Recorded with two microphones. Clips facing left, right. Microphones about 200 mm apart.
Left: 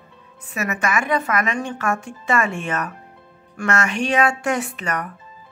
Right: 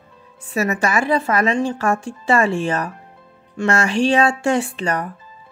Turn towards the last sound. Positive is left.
turn(degrees=-30)  # may be behind; listen again after turning